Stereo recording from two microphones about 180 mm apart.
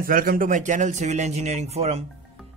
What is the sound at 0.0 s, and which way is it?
A man's voice, 55° right (ahead or behind).